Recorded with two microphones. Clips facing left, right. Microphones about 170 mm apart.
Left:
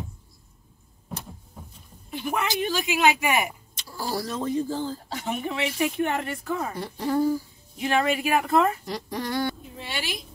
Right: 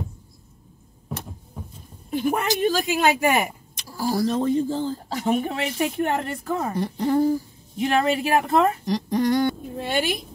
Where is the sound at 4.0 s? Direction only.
20° right (ahead or behind).